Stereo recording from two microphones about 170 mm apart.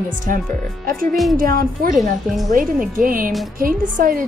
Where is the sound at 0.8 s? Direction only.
55° right (ahead or behind).